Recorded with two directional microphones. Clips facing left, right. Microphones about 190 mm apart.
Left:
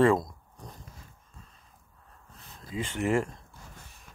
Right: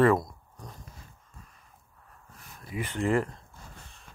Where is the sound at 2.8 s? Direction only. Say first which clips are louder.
Even; 20° left (ahead or behind).